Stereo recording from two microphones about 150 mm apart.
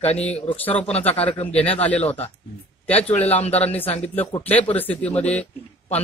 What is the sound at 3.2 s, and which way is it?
Speech, 45° left (ahead or behind).